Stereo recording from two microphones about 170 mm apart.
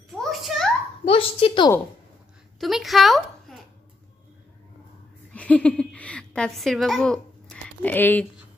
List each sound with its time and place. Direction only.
0.2 s a sound: centre (ahead or behind)
1.0 s a woman's voice: 30° left (ahead or behind)
2.6 s a woman's voice: centre (ahead or behind)
5.3 s a woman's voice: 5° left (ahead or behind)